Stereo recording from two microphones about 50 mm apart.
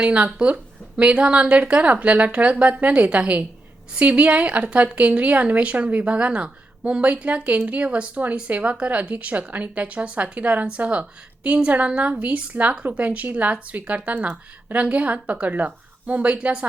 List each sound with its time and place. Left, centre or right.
0.0 s speech: right